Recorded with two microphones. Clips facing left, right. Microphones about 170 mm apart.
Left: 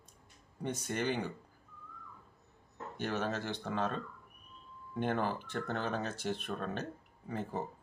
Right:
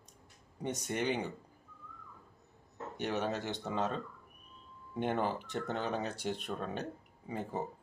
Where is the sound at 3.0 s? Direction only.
15° right (ahead or behind).